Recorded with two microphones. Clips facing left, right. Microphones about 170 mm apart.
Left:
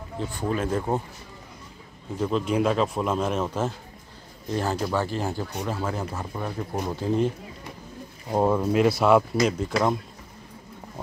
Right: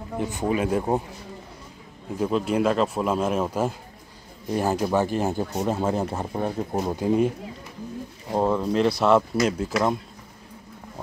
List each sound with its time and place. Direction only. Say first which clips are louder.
0.2 s speech: right 3 dB; 20° right (ahead or behind)
2.1 s speech: right 1 dB; 5° right (ahead or behind); by 6.8 s 30° right (ahead or behind)
6.8 s speech: right 3 dB; 20° right (ahead or behind)
8.3 s speech: left 1 dB; 10° left (ahead or behind)